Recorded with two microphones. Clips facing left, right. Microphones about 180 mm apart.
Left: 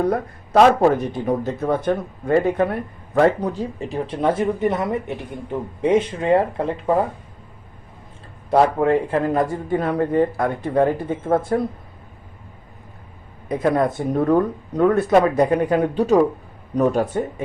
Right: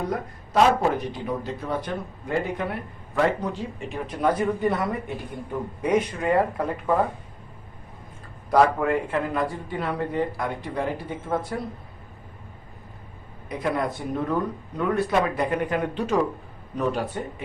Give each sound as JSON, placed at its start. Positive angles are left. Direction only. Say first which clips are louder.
{"t": 0.0, "sound": "a man's voice", "louder": "left 8 dB", "side_deg": 60}
{"t": 0.8, "sound": "a man's voice", "louder": "left 7 dB", "side_deg": 45}
{"t": 3.2, "sound": "speech", "louder": "left 6 dB", "side_deg": 40}
{"t": 8.4, "sound": "a man's voice", "louder": "left 3 dB", "side_deg": 30}
{"t": 13.5, "sound": "a man's voice", "louder": "left 7 dB", "side_deg": 50}